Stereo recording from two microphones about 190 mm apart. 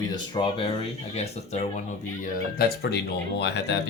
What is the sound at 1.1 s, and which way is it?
Speech, 35° left (ahead or behind).